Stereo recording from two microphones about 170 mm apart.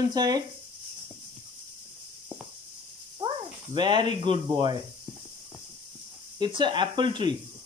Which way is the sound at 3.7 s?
25° right (ahead or behind).